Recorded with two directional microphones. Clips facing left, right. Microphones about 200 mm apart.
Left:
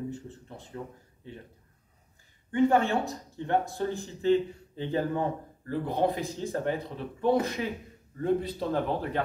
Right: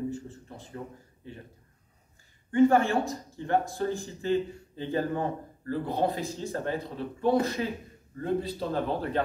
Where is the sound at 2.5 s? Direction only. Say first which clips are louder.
Right 2 dB; 20° left (ahead or behind).